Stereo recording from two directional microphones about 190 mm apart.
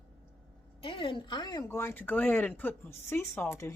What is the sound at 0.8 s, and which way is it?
Speech, 30° left (ahead or behind).